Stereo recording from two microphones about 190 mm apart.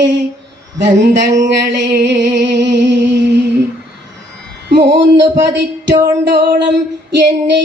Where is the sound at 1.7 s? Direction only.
65° right (ahead or behind).